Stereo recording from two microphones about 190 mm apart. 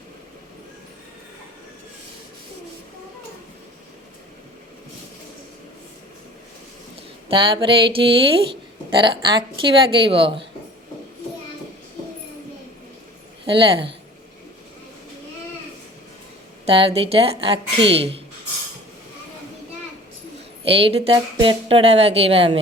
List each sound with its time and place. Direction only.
7.3 s a woman's voice: 25° right (ahead or behind)
13.5 s a woman's voice: 25° right (ahead or behind)
16.6 s a woman's voice: 30° right (ahead or behind)
20.7 s a woman's voice: 30° right (ahead or behind)